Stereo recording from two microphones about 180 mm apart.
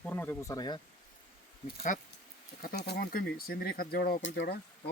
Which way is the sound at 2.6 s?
65° left (ahead or behind).